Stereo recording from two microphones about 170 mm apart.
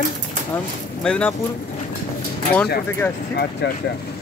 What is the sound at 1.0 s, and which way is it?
Speech, 5° left (ahead or behind).